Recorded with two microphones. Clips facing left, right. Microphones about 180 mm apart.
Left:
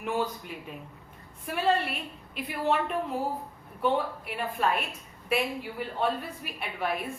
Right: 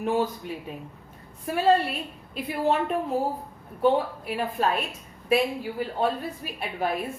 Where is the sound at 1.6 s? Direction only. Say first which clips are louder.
Right 5 dB; 40° right (ahead or behind).